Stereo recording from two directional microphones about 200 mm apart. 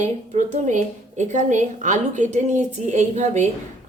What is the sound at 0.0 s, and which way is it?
A woman's voice, 35° right (ahead or behind).